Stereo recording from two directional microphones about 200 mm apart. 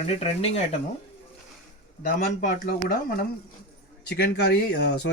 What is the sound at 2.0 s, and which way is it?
Speech, 45° left (ahead or behind).